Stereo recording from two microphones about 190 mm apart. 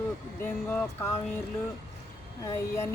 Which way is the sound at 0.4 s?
10° left (ahead or behind).